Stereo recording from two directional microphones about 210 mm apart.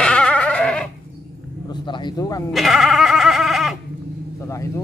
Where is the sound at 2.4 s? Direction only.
Centre (ahead or behind).